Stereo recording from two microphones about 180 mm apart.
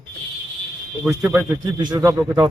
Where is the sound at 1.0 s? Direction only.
10° right (ahead or behind).